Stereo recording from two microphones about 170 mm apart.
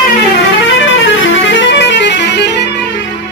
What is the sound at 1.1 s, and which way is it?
Music, 90° left.